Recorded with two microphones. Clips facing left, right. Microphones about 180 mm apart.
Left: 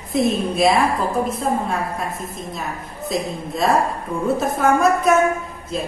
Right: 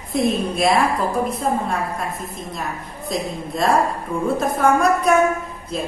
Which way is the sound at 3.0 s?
Centre (ahead or behind).